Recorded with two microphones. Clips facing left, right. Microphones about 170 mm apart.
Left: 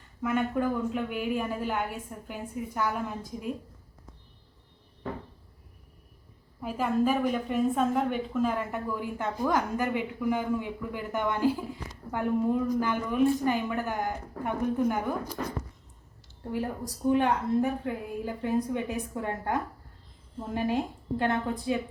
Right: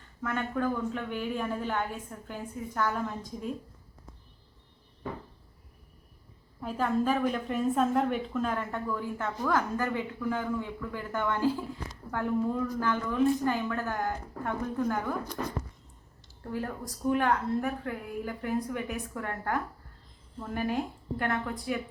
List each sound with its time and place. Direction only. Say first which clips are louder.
0.2 s a woman's voice: left 3 dB; 10° left (ahead or behind)
6.6 s a woman's voice: left 2 dB; 10° left (ahead or behind)
16.4 s a woman's voice: left 3 dB; 20° left (ahead or behind)